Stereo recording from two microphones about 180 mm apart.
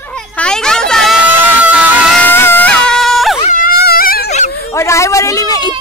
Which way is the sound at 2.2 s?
10° left (ahead or behind).